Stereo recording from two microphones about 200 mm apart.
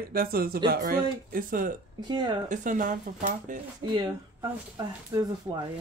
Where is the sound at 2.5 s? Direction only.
40° right (ahead or behind).